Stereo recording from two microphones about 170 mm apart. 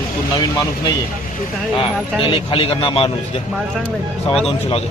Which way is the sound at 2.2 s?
30° left (ahead or behind).